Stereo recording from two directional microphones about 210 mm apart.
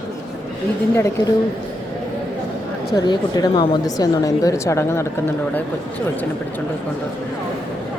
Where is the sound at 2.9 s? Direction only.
20° left (ahead or behind).